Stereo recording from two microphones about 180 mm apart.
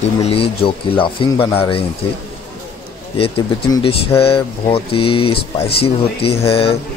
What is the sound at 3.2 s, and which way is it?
Speech, 30° left (ahead or behind).